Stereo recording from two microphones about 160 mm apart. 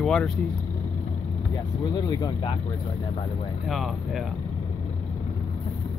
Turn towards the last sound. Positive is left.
turn(degrees=0)  # may be behind; listen again after turning